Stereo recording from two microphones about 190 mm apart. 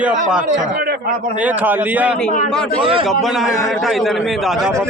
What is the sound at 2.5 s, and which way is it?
Speech, 5° left (ahead or behind).